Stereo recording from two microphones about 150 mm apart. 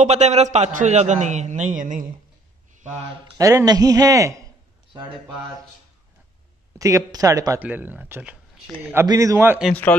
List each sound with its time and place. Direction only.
0.0 s a man's voice: 50° right (ahead or behind)
3.3 s a man's voice: 20° right (ahead or behind)
6.8 s a man's voice: 20° right (ahead or behind)
7.6 s speech: 10° right (ahead or behind)
9.0 s a man's voice: 25° right (ahead or behind)